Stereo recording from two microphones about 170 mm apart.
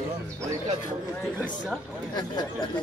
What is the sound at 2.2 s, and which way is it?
Speech, 25° left (ahead or behind).